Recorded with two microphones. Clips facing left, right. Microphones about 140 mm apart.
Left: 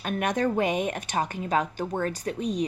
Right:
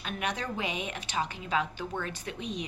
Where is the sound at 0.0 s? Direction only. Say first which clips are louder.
Left 9 dB; 50° left (ahead or behind).